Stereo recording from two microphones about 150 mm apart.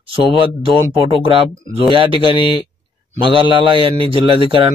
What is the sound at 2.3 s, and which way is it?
Speech, 30° left (ahead or behind).